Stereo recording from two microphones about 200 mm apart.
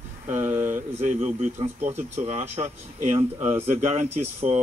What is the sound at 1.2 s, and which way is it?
Speech, 30° right (ahead or behind).